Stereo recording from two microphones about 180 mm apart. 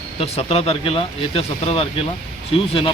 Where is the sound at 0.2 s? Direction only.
30° left (ahead or behind).